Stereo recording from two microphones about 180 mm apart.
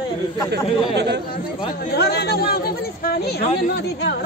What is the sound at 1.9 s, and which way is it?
Speech, 65° left (ahead or behind).